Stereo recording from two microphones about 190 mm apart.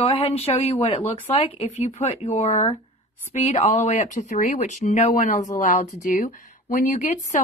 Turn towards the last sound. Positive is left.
turn(degrees=40)  # may be behind; listen again after turning